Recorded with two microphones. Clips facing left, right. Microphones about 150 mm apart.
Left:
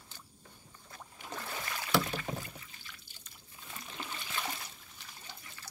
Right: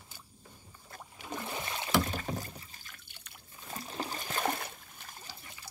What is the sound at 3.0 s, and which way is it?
Trickle, 65° right (ahead or behind).